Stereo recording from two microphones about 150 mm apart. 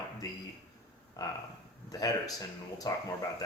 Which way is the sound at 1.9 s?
25° left (ahead or behind).